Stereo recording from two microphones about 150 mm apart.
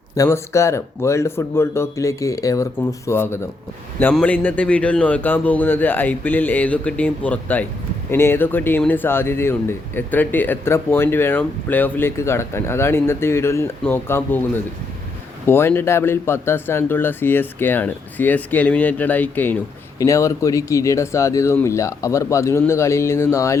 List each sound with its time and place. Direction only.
0.2 s speech: 20° left (ahead or behind)